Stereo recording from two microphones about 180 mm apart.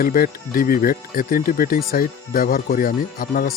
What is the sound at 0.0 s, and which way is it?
Speech, 55° left (ahead or behind).